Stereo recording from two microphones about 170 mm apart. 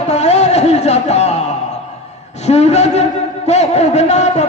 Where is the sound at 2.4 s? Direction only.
40° left (ahead or behind).